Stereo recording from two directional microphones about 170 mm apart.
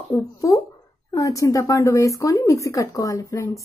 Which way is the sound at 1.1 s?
20° left (ahead or behind).